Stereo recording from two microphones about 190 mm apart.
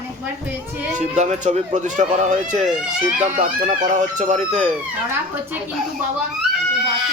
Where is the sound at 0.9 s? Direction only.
40° right (ahead or behind).